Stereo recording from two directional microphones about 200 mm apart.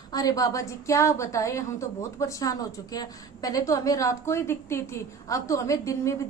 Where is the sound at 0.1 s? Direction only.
20° left (ahead or behind).